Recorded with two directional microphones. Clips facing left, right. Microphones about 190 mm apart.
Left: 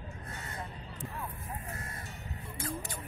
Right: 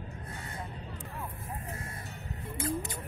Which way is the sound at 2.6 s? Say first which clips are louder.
Right 5 dB; 20° right (ahead or behind).